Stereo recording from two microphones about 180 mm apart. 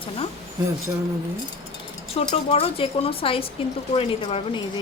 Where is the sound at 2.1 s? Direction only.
35° left (ahead or behind).